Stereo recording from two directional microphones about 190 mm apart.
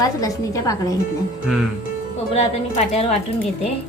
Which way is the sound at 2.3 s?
35° left (ahead or behind).